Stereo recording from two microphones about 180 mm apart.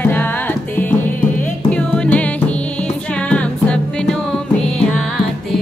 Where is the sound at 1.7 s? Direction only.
10° left (ahead or behind).